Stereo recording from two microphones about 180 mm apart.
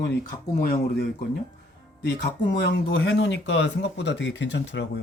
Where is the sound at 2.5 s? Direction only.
75° left (ahead or behind).